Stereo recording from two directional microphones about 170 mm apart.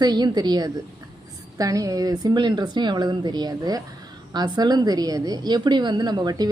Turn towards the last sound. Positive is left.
turn(degrees=-20)  # may be behind; listen again after turning